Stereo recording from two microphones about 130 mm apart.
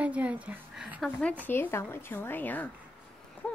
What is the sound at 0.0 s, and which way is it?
Speech, 10° right (ahead or behind).